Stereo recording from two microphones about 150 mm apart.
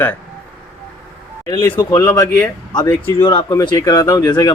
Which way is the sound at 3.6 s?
25° left (ahead or behind).